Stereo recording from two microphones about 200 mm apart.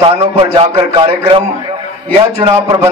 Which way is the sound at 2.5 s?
15° right (ahead or behind).